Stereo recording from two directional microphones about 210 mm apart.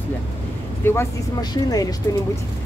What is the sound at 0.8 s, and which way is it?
Speech, 10° left (ahead or behind).